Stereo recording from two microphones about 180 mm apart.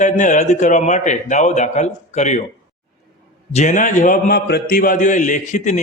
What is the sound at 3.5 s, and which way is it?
A man's voice, 45° left (ahead or behind).